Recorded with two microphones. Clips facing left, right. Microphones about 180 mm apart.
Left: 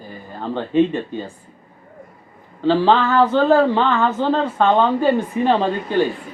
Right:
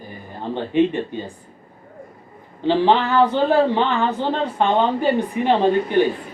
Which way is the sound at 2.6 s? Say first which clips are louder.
Left 1 dB; 20° right (ahead or behind).